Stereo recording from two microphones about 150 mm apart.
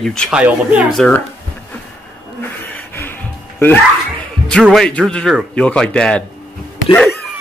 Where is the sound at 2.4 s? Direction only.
15° left (ahead or behind).